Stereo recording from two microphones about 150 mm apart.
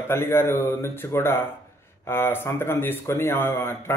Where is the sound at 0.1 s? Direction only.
15° left (ahead or behind).